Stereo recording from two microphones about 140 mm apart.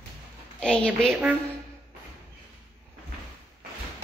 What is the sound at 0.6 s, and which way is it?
Speech, 5° left (ahead or behind).